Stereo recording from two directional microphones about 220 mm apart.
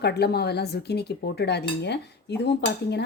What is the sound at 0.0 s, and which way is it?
Speech, 50° left (ahead or behind).